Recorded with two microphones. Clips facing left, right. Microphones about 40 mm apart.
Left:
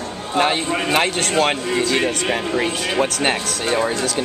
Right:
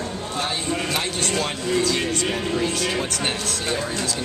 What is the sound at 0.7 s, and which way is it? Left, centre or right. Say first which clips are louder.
Speech: left 5 dB; left.